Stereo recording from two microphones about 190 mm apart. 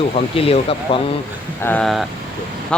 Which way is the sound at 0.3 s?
30° left (ahead or behind).